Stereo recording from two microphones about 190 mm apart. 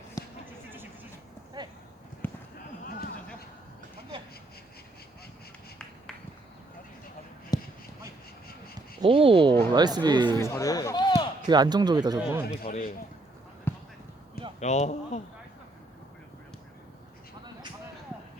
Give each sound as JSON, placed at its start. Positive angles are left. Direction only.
{"t": 0.2, "sound": "a sound", "side_deg": 20}
{"t": 1.6, "sound": "clip-clop", "side_deg": -20}
{"t": 2.2, "sound": "clip-clop", "side_deg": 10}
{"t": 2.8, "sound": "a sound", "side_deg": 55}
{"t": 7.5, "sound": "a sound", "side_deg": 20}
{"t": 9.0, "sound": "speech", "side_deg": -30}
{"t": 10.4, "sound": "speech", "side_deg": 15}
{"t": 11.4, "sound": "speech", "side_deg": -20}
{"t": 12.6, "sound": "a man's voice", "side_deg": 50}
{"t": 13.7, "sound": "basketball bounce", "side_deg": 10}
{"t": 14.6, "sound": "speech", "side_deg": 40}